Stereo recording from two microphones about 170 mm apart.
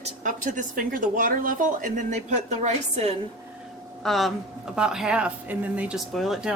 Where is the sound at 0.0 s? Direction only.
50° right (ahead or behind).